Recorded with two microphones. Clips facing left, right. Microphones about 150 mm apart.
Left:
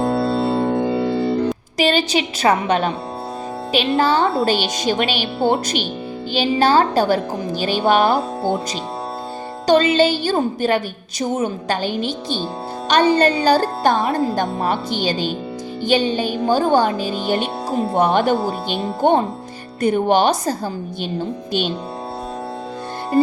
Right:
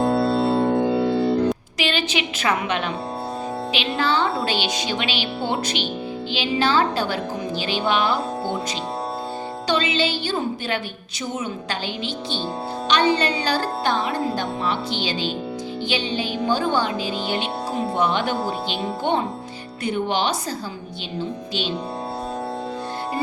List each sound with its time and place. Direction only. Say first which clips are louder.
0.0 s music: left 1 dB; centre (ahead or behind)
1.8 s a woman's voice: left 8 dB; 40° left (ahead or behind)
9.6 s a woman's voice: left 9 dB; 45° left (ahead or behind)